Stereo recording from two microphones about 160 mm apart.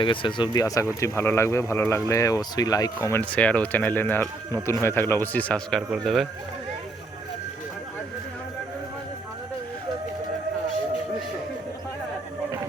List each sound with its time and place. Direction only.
0.0 s speech: 30° left (ahead or behind); by 6.2 s centre (ahead or behind)